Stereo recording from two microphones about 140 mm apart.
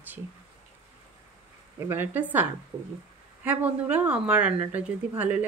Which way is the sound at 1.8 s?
15° right (ahead or behind).